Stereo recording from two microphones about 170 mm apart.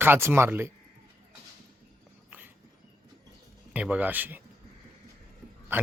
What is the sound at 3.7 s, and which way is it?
Speech, 10° right (ahead or behind).